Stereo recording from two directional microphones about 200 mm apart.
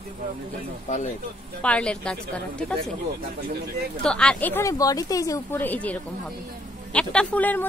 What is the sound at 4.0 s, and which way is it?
Speech, 5° left (ahead or behind).